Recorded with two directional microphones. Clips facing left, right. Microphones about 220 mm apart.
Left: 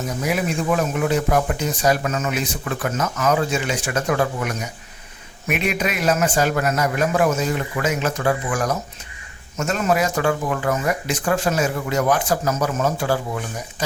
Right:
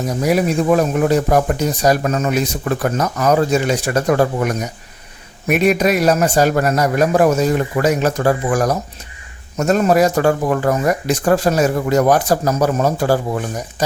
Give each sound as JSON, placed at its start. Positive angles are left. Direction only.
{"t": 0.3, "sound": "speech", "side_deg": -40}